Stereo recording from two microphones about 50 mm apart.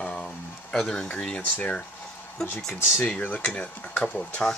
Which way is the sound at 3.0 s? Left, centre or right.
Left.